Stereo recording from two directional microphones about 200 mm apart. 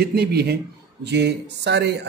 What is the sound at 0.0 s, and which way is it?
Speech, 50° right (ahead or behind).